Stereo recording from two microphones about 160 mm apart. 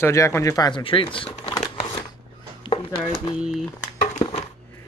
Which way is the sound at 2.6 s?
35° left (ahead or behind).